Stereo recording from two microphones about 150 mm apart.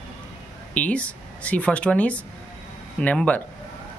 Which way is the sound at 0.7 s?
10° left (ahead or behind).